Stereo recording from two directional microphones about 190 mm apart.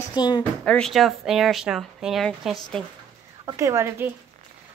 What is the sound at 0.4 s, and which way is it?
Speech, 5° left (ahead or behind).